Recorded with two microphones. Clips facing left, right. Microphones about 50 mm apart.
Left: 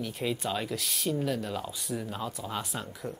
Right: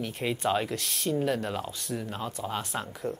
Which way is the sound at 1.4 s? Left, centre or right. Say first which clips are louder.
Right 2 dB; right.